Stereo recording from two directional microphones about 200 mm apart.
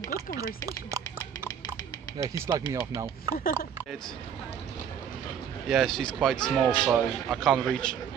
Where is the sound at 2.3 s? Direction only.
15° right (ahead or behind).